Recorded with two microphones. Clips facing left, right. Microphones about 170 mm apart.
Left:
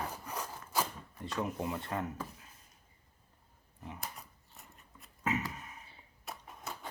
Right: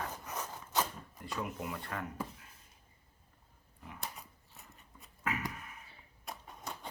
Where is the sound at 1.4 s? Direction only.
25° left (ahead or behind).